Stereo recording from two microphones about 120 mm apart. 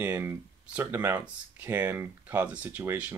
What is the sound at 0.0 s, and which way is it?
Speech, 15° right (ahead or behind).